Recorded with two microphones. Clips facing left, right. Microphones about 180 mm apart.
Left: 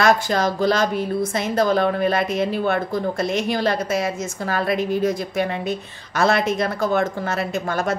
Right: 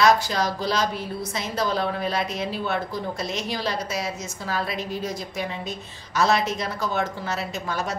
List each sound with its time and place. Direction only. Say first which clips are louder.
0.0 s a woman's voice: left 2 dB; 50° left (ahead or behind)